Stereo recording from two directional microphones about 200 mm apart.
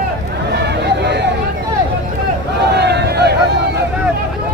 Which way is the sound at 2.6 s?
55° right (ahead or behind).